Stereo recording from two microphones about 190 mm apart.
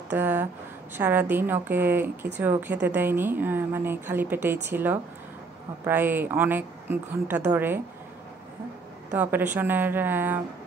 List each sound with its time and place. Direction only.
0.1 s a woman's voice: 10° right (ahead or behind)
9.1 s a woman's voice: 10° right (ahead or behind)